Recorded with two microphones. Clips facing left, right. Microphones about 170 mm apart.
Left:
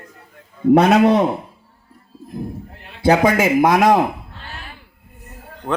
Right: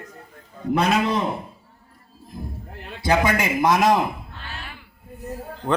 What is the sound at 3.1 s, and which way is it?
Speech, 50° left (ahead or behind).